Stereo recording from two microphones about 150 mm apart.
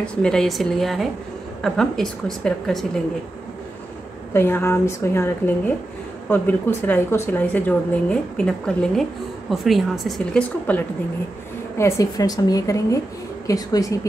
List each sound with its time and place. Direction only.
0.0 s a woman's voice: 5° left (ahead or behind)
4.3 s a woman's voice: 15° left (ahead or behind)
11.8 s a woman's voice: 25° left (ahead or behind)